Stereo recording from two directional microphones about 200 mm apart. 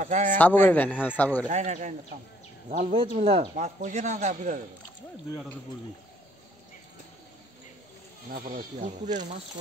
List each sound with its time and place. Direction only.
0.0 s a sound: 40° right (ahead or behind)
0.4 s a man's voice: 10° left (ahead or behind)
1.5 s speech: 35° right (ahead or behind)
8.3 s speech: 45° right (ahead or behind)